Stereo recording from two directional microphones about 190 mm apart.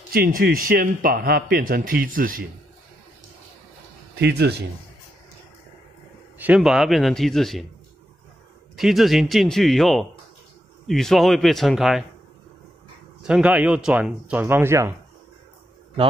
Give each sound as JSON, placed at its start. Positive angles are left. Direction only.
{"t": 0.1, "sound": "a man's voice", "side_deg": -50}
{"t": 4.1, "sound": "speech", "side_deg": -60}
{"t": 6.3, "sound": "a man's voice", "side_deg": -5}
{"t": 8.7, "sound": "a man's voice", "side_deg": 0}
{"t": 13.2, "sound": "speech", "side_deg": -5}